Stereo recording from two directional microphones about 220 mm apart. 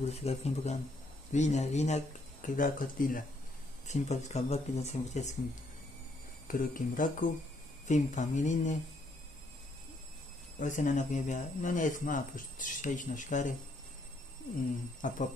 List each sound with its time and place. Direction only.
0.0 s speech: 30° left (ahead or behind)
6.4 s speech: 40° left (ahead or behind)
10.6 s speech: 35° left (ahead or behind)
15.0 s speech: 35° left (ahead or behind)